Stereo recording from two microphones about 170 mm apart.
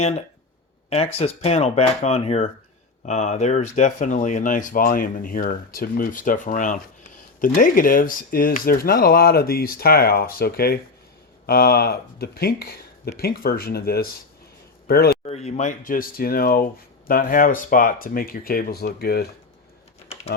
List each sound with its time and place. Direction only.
0.9 s speech: 35° left (ahead or behind); by 15.1 s 65° left (ahead or behind)
15.2 s speech: 40° left (ahead or behind); by 19.3 s 65° left (ahead or behind)